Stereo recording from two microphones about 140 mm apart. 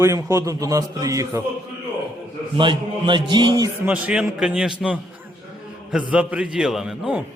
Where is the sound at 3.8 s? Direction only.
10° right (ahead or behind).